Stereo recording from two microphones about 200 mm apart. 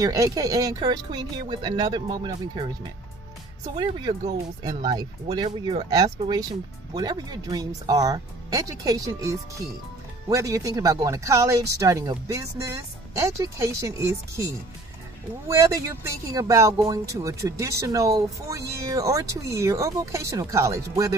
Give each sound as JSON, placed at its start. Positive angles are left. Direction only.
{"t": 0.0, "sound": "speech", "side_deg": -15}